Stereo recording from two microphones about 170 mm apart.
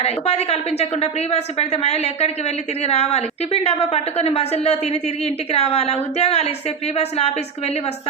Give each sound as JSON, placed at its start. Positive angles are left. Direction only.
{"t": 0.0, "sound": "a woman's voice", "side_deg": 40}